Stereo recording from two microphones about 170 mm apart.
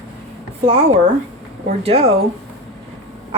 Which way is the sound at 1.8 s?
35° right (ahead or behind).